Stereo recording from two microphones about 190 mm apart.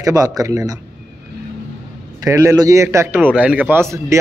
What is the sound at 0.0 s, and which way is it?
Speech, 20° right (ahead or behind).